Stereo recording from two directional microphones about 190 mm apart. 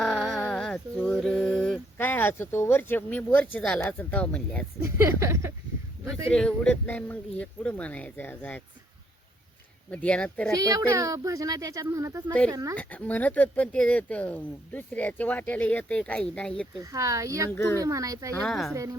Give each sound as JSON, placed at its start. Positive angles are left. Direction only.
{"t": 0.0, "sound": "a sound", "side_deg": 0}
{"t": 2.0, "sound": "speech", "side_deg": 10}
{"t": 4.8, "sound": "speech", "side_deg": -15}
{"t": 6.3, "sound": "speech", "side_deg": 5}
{"t": 9.9, "sound": "speech", "side_deg": 5}
{"t": 10.6, "sound": "speech", "side_deg": -20}
{"t": 12.7, "sound": "speech", "side_deg": 10}
{"t": 16.8, "sound": "speech", "side_deg": -15}
{"t": 17.5, "sound": "speech", "side_deg": 10}
{"t": 17.7, "sound": "speech", "side_deg": -20}
{"t": 18.3, "sound": "speech", "side_deg": 0}
{"t": 18.7, "sound": "speech", "side_deg": -15}